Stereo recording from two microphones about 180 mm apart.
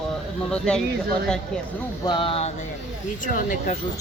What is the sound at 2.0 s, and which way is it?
Speech, 25° left (ahead or behind).